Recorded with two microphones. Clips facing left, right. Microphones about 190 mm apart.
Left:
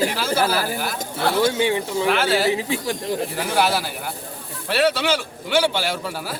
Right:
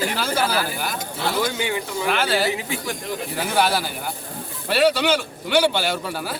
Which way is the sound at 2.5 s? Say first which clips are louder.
Left 4 dB; 30° left (ahead or behind).